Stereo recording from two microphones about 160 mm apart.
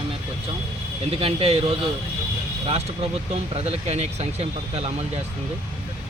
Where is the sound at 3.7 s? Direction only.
40° right (ahead or behind).